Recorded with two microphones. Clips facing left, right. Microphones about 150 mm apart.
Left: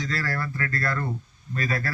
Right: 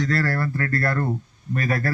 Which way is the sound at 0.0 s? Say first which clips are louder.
Right 6 dB; 65° right (ahead or behind).